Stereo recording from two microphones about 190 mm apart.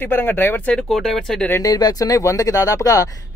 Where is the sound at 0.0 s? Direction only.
10° left (ahead or behind).